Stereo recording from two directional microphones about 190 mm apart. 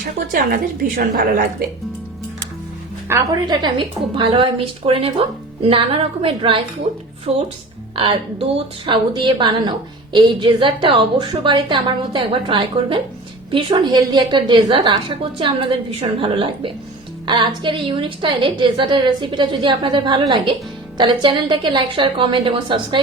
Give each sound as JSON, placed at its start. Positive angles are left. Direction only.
{"t": 0.3, "sound": "a woman's voice", "side_deg": -45}
{"t": 3.1, "sound": "a woman's voice", "side_deg": -20}